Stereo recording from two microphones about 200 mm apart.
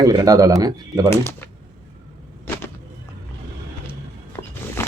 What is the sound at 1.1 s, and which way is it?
Speech, 10° left (ahead or behind).